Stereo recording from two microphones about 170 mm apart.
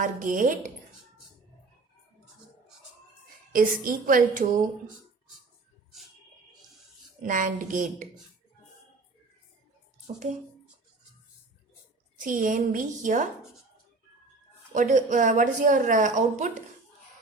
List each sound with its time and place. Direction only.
0.0 s speech: 50° right (ahead or behind)
3.5 s a woman's voice: 55° right (ahead or behind)
7.2 s speech: 50° right (ahead or behind)
12.2 s speech: 50° right (ahead or behind)
14.7 s speech: 45° right (ahead or behind)